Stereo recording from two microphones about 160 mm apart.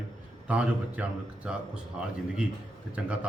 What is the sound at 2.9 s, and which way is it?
Speech, 10° right (ahead or behind).